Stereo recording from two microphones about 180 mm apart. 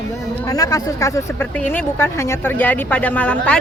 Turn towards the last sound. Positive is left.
turn(degrees=5)  # may be behind; listen again after turning